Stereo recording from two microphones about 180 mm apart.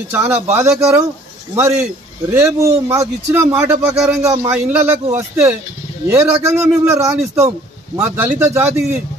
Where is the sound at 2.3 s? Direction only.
15° right (ahead or behind).